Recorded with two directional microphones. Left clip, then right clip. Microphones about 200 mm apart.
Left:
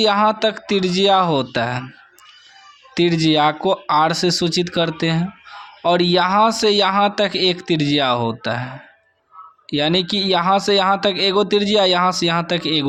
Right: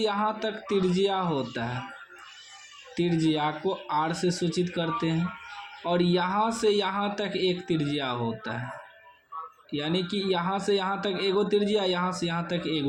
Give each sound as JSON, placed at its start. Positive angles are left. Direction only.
{"t": 0.0, "sound": "speech", "side_deg": 35}
{"t": 2.9, "sound": "speech", "side_deg": 35}
{"t": 9.6, "sound": "speech", "side_deg": 35}